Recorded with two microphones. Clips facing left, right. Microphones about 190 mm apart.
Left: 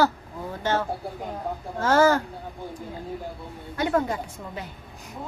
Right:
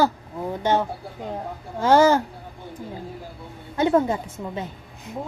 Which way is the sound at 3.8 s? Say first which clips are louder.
Right 5 dB; 25° right (ahead or behind).